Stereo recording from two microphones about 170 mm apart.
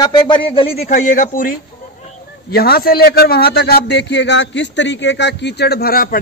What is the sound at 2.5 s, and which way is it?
A man's voice, 65° left (ahead or behind).